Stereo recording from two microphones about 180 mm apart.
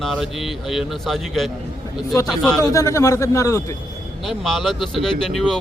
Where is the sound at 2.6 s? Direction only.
20° left (ahead or behind).